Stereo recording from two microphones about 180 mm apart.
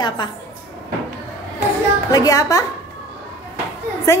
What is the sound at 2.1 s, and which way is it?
Speech, 20° left (ahead or behind).